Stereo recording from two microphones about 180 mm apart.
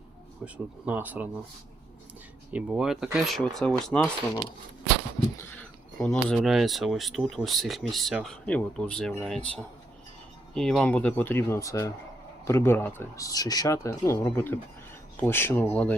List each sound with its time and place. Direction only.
0.4 s speech: 10° right (ahead or behind)
2.5 s speech: 5° right (ahead or behind)
5.4 s speech: 5° left (ahead or behind)